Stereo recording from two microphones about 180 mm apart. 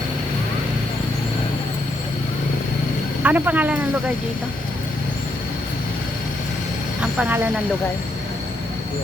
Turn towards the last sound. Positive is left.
turn(degrees=-5)  # may be behind; listen again after turning